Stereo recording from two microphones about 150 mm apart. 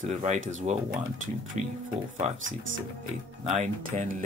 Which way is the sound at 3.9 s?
50° right (ahead or behind).